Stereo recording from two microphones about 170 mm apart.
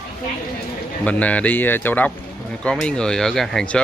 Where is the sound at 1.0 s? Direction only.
10° left (ahead or behind).